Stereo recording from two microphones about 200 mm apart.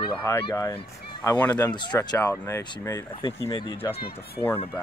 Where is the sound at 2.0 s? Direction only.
20° left (ahead or behind).